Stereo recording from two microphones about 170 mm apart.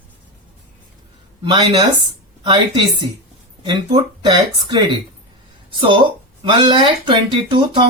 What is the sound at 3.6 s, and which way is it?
Speech, 25° right (ahead or behind).